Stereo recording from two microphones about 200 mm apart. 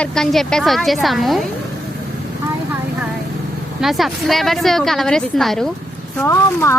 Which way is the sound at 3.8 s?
Centre (ahead or behind).